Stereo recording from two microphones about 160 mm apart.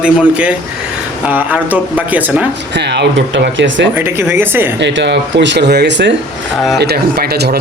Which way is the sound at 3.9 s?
15° right (ahead or behind).